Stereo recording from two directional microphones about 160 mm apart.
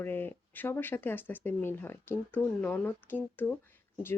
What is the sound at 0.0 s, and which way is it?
Speech, 15° left (ahead or behind).